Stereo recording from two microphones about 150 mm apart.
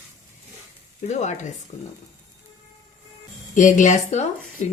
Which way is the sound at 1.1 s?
50° left (ahead or behind).